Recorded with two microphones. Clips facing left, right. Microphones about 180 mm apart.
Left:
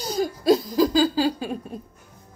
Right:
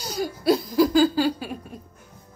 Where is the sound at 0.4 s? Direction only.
10° right (ahead or behind).